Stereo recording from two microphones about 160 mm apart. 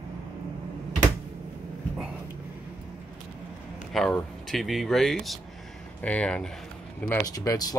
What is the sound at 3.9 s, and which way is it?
Speech, centre (ahead or behind).